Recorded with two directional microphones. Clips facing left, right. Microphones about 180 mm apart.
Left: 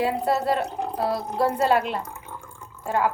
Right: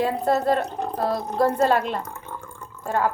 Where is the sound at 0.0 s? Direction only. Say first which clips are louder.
Right 2 dB; 10° left (ahead or behind).